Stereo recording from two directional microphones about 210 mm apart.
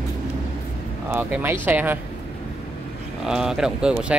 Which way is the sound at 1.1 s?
10° right (ahead or behind).